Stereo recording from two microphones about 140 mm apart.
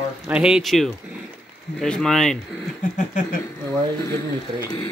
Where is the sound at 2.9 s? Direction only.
65° left (ahead or behind).